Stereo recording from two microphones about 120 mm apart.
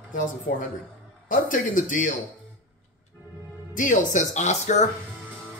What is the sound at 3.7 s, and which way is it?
Speech, 90° left.